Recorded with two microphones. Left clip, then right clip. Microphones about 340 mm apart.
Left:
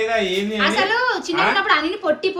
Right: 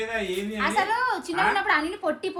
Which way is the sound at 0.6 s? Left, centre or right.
Centre.